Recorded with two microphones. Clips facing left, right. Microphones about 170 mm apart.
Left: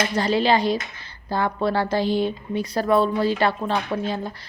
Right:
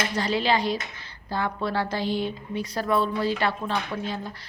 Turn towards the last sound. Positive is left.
turn(degrees=40)  # may be behind; listen again after turning